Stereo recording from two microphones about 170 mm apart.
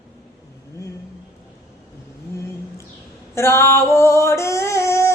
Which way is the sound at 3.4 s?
15° left (ahead or behind).